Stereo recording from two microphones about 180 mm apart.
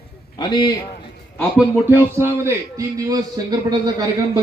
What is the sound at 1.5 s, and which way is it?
Speech, 10° right (ahead or behind).